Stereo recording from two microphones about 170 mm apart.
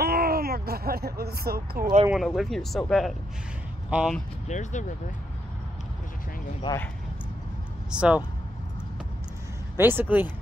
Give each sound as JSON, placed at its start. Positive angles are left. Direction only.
{"t": 0.0, "sound": "a sound", "side_deg": -65}
{"t": 2.0, "sound": "speech", "side_deg": 0}
{"t": 4.5, "sound": "speech", "side_deg": 45}
{"t": 7.9, "sound": "speech", "side_deg": -5}
{"t": 9.8, "sound": "speech", "side_deg": -10}